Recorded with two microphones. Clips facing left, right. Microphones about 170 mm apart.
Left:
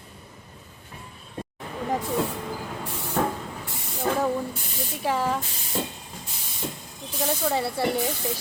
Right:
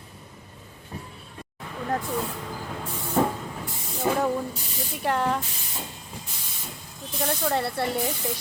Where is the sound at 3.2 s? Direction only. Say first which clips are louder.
Right 2 dB; 15° right (ahead or behind).